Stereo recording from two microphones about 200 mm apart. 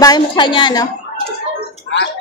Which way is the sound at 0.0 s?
20° left (ahead or behind).